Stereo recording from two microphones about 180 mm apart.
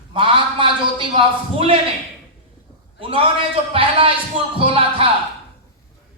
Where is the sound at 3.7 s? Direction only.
30° right (ahead or behind).